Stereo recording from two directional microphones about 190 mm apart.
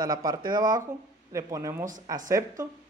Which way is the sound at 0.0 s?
20° right (ahead or behind).